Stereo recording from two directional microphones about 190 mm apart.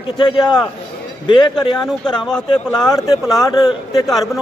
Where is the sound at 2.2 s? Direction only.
5° left (ahead or behind).